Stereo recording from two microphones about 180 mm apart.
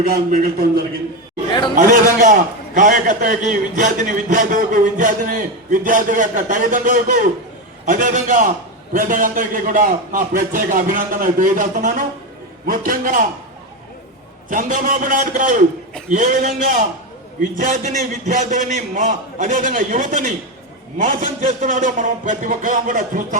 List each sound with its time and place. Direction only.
1.7 s a man's voice: 45° right (ahead or behind)
14.5 s a man's voice: 45° right (ahead or behind)